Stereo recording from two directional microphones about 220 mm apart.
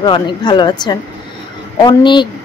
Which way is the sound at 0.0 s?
20° left (ahead or behind).